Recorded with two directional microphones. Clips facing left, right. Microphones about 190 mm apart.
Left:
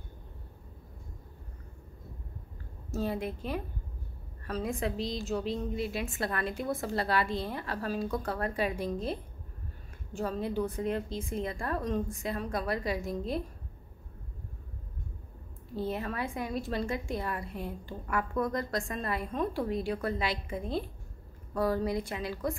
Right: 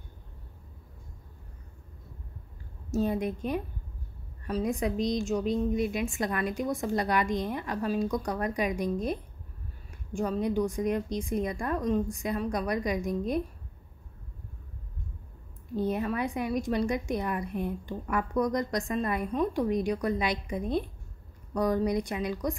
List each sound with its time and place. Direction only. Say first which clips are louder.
2.9 s a woman's voice: right 5 dB; 20° right (ahead or behind)
15.7 s a woman's voice: right 5 dB; 20° right (ahead or behind)